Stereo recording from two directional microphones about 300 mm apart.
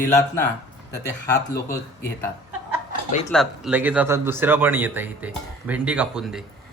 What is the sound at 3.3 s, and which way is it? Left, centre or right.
Speech, centre.